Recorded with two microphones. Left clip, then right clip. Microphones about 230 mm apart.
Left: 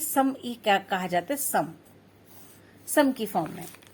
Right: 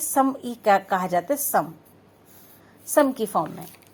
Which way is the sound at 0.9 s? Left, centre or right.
Right.